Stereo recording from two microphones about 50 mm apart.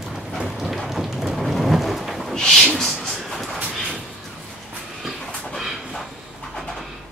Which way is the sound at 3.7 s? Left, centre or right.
Centre.